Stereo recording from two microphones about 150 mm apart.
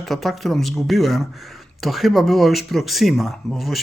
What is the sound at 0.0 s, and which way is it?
Speech, centre (ahead or behind).